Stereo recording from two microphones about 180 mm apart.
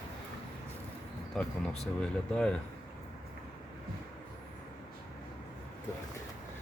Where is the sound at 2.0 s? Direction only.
5° left (ahead or behind).